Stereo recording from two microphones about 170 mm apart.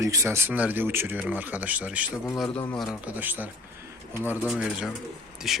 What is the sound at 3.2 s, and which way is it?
Speech, 10° right (ahead or behind).